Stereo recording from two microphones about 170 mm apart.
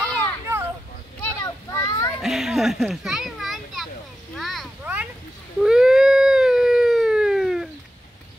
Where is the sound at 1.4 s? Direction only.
20° left (ahead or behind).